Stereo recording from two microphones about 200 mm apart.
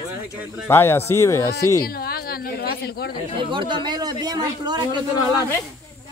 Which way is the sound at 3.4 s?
25° right (ahead or behind).